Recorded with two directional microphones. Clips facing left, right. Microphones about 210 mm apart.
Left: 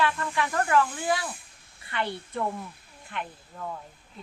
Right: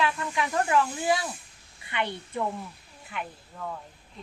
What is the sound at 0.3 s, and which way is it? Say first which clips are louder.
Speech: left 1 dB; 15° right (ahead or behind).